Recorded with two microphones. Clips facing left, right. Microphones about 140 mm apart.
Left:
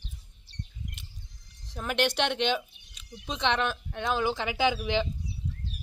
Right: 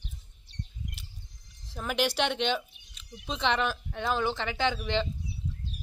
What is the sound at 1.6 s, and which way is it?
A woman's voice, centre (ahead or behind).